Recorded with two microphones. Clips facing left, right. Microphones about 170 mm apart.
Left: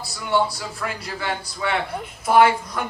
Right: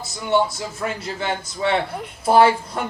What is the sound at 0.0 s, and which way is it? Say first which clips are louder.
Speech: right 2 dB; 20° right (ahead or behind).